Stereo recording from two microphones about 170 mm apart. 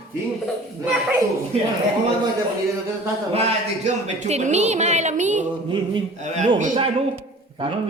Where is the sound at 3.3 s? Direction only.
40° right (ahead or behind).